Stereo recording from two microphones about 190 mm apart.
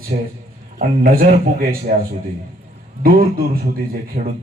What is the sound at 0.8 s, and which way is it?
Speech, 50° right (ahead or behind).